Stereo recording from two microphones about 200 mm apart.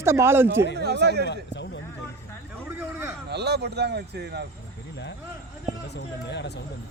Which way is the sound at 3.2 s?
55° right (ahead or behind).